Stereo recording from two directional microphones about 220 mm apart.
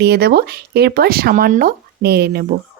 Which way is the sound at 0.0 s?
45° right (ahead or behind).